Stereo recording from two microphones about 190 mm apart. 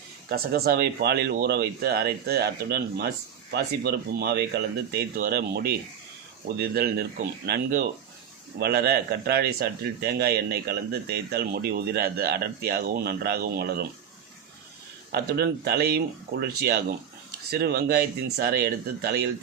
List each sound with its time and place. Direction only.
0.3 s speech: 55° right (ahead or behind)
15.1 s speech: 60° right (ahead or behind)